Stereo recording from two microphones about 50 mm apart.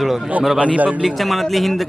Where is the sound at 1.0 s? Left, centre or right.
Centre.